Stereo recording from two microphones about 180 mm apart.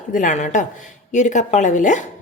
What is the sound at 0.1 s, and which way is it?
A woman's voice, 45° left (ahead or behind).